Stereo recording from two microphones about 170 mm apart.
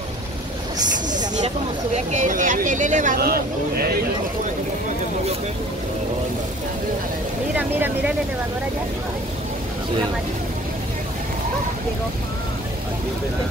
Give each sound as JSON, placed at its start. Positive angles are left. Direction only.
{"t": 2.0, "sound": "speech", "side_deg": -45}